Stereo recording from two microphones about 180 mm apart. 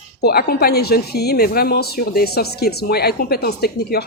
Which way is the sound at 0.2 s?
60° left (ahead or behind).